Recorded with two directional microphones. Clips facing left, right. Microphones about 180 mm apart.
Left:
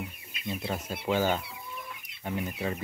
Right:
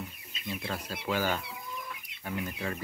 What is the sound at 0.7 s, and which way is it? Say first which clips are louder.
Speech: left 4 dB; 20° left (ahead or behind).